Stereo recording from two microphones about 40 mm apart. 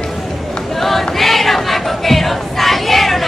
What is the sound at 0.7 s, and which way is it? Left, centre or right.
Choir, centre.